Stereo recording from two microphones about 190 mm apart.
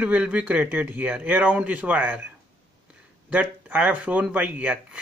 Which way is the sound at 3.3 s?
5° right (ahead or behind).